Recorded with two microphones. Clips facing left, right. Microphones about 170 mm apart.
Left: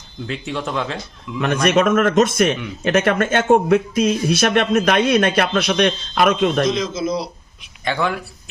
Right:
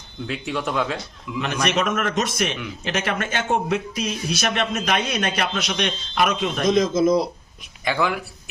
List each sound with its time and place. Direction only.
0.3 s speech: centre (ahead or behind)
1.4 s speech: 50° left (ahead or behind)
6.7 s a man's voice: 50° right (ahead or behind)
7.9 s speech: 5° right (ahead or behind)